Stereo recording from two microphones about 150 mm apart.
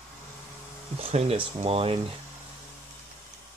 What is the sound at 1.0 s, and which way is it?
Speech, 45° right (ahead or behind).